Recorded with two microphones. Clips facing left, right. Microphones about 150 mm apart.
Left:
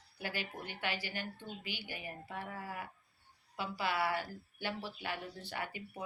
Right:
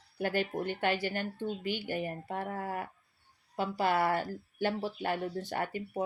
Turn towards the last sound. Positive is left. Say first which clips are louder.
# right 8 dB
turn(degrees=-45)  # may be behind; listen again after turning